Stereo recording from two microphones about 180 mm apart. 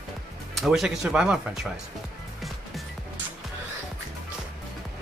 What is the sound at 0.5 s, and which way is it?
Speech, centre (ahead or behind).